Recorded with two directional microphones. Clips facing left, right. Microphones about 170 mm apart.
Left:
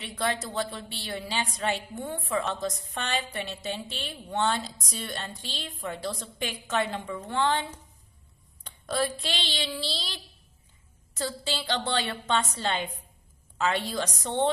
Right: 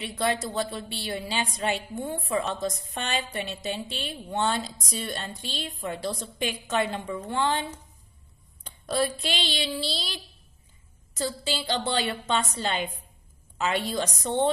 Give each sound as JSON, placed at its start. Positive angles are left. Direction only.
{"t": 0.2, "sound": "a woman's voice", "side_deg": -15}
{"t": 9.2, "sound": "a woman's voice", "side_deg": -10}